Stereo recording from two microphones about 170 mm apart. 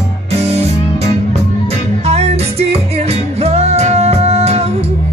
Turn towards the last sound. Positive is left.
turn(degrees=-40)  # may be behind; listen again after turning